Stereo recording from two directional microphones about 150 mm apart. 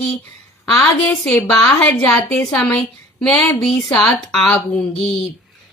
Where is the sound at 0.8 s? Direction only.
10° left (ahead or behind).